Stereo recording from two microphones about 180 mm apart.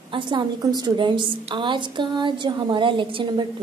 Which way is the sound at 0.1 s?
25° right (ahead or behind).